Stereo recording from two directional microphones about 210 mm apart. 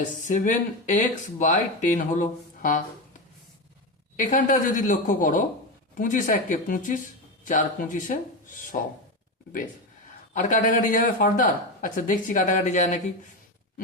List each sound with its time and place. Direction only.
0.0 s speech: 35° left (ahead or behind)
4.2 s speech: 40° left (ahead or behind)
10.3 s speech: 40° left (ahead or behind)